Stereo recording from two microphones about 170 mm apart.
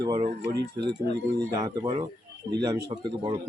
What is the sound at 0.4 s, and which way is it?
Speech, 90° right.